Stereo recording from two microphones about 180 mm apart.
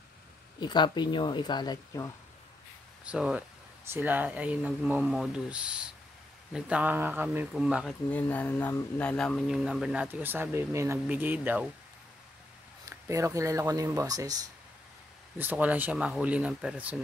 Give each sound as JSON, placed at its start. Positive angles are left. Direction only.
{"t": 0.6, "sound": "speech", "side_deg": 25}
{"t": 3.1, "sound": "speech", "side_deg": -5}
{"t": 8.1, "sound": "speech", "side_deg": 10}
{"t": 12.9, "sound": "speech", "side_deg": -15}
{"t": 15.3, "sound": "speech", "side_deg": -10}